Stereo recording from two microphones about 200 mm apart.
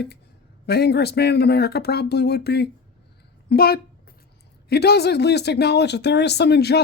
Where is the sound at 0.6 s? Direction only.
55° left (ahead or behind).